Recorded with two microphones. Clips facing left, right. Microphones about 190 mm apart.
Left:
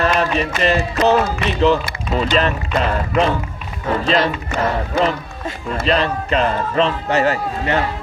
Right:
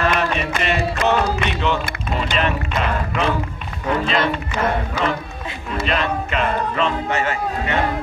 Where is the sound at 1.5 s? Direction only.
35° left (ahead or behind).